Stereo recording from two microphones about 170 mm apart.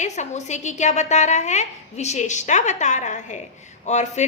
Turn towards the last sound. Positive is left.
turn(degrees=45)  # may be behind; listen again after turning